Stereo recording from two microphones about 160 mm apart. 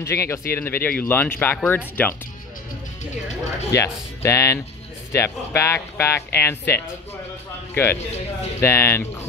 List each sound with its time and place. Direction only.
0.0 s speech: 15° left (ahead or behind)
3.7 s speech: 15° left (ahead or behind)